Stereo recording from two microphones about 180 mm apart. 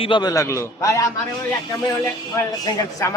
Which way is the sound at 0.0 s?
25° left (ahead or behind).